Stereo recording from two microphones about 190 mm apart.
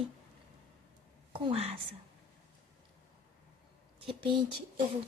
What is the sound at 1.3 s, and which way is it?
Speech, 30° right (ahead or behind).